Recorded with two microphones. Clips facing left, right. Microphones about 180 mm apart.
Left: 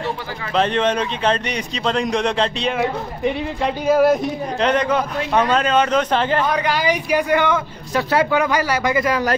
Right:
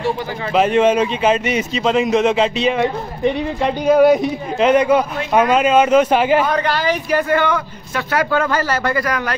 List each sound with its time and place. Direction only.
0.6 s a man's voice: 10° right (ahead or behind)
6.7 s speech: 10° left (ahead or behind)
7.9 s a man's voice: 30° left (ahead or behind)
8.3 s speech: 15° left (ahead or behind)